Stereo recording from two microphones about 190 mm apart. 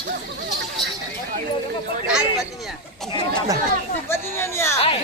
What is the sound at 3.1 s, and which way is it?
Chatter, 25° left (ahead or behind).